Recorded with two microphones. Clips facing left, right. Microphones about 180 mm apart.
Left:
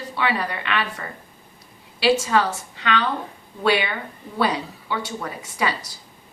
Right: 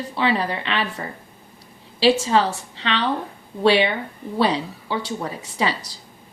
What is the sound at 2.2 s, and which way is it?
Speech, 25° right (ahead or behind).